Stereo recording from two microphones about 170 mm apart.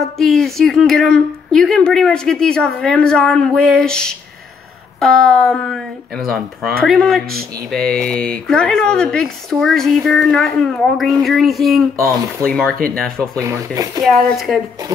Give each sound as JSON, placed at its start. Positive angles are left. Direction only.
{"t": 0.2, "sound": "a woman's voice", "side_deg": 0}
{"t": 13.4, "sound": "speech", "side_deg": -20}
{"t": 14.0, "sound": "a woman's voice", "side_deg": 0}
{"t": 14.9, "sound": "speech", "side_deg": -20}